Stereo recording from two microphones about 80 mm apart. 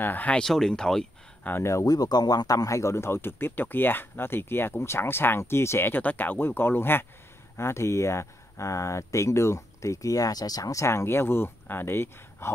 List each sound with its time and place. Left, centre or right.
0.0 s speech: left
0.4 s speech: centre
1.4 s speech: left
1.7 s speech: left